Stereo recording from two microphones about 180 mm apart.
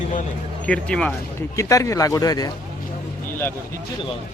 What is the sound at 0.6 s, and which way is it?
Speech, 5° left (ahead or behind).